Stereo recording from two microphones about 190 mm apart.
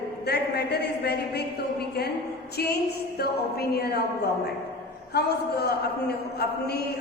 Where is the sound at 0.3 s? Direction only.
60° left (ahead or behind).